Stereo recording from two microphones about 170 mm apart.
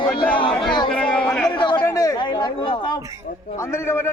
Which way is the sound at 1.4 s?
25° left (ahead or behind).